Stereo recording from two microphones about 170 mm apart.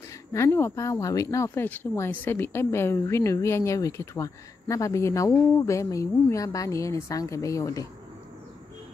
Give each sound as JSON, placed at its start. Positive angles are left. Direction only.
{"t": 0.3, "sound": "speech", "side_deg": 15}